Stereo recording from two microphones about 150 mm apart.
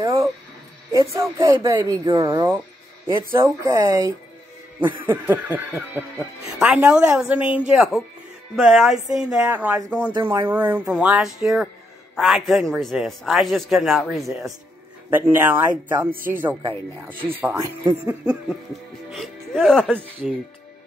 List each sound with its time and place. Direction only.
0.0 s speech: 20° right (ahead or behind)
5.0 s a man's voice: 10° right (ahead or behind)
15.0 s speech: 15° right (ahead or behind)
16.1 s speech: 70° right (ahead or behind)
17.2 s speech: 15° right (ahead or behind); by 20.0 s 5° left (ahead or behind)